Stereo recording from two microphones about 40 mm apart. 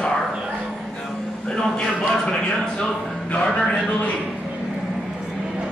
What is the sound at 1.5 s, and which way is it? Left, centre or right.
Speech, centre.